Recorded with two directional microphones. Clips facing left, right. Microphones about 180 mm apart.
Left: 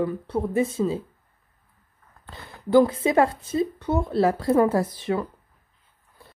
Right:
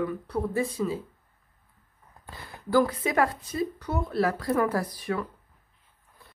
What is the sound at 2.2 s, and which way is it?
Speech, 20° left (ahead or behind).